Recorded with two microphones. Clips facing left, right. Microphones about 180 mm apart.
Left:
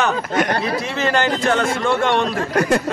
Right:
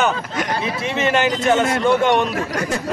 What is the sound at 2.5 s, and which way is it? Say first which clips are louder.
Speech: left 10 dB; 60° left (ahead or behind).